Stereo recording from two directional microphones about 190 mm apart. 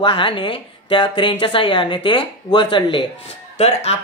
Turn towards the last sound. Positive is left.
turn(degrees=30)  # may be behind; listen again after turning